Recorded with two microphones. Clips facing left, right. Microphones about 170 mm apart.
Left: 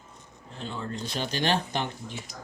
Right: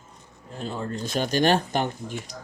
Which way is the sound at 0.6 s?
45° right (ahead or behind).